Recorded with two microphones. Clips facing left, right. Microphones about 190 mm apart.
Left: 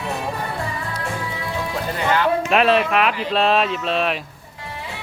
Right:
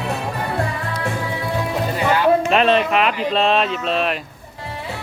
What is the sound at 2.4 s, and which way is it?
Speech, 5° left (ahead or behind).